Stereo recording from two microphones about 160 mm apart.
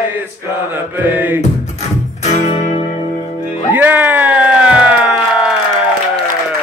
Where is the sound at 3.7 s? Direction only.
10° right (ahead or behind).